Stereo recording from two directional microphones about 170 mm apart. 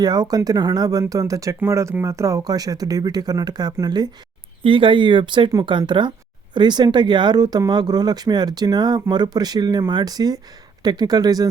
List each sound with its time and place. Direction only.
0.0 s speech: 25° right (ahead or behind)